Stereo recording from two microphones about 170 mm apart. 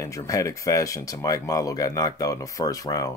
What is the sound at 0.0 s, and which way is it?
Speech, 20° left (ahead or behind).